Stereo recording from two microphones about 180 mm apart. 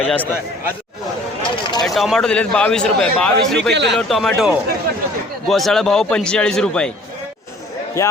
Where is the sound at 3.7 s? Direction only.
75° right (ahead or behind).